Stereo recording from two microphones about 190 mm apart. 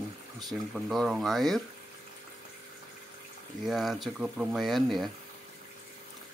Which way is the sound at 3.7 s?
Centre (ahead or behind).